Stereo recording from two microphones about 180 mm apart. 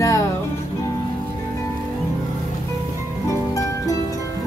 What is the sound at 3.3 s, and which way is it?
Music, 15° left (ahead or behind).